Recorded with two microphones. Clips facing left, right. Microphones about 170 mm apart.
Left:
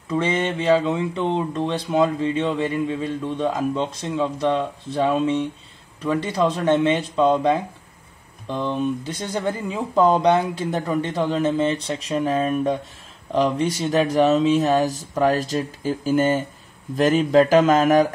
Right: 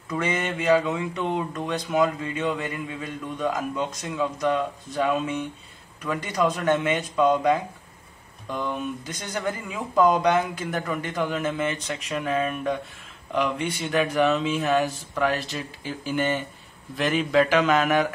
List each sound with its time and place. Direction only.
0.1 s speech: 25° left (ahead or behind); by 18.0 s 40° left (ahead or behind)